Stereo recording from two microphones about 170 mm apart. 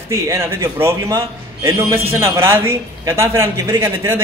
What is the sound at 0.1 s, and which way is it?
A man's voice, 15° right (ahead or behind).